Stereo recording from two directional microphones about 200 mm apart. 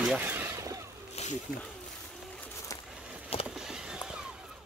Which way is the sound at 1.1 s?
35° left (ahead or behind).